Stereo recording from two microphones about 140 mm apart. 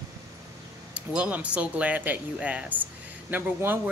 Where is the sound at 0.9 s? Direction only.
10° right (ahead or behind).